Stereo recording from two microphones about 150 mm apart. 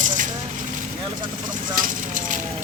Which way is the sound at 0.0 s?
60° right (ahead or behind).